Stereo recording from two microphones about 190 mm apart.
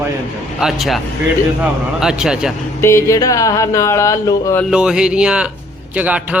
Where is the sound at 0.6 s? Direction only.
Centre (ahead or behind).